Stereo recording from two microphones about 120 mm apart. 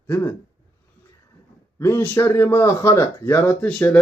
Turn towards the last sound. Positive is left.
turn(degrees=10)  # may be behind; listen again after turning